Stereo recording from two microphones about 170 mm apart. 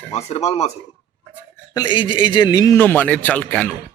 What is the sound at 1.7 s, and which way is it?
A man's voice, 25° left (ahead or behind).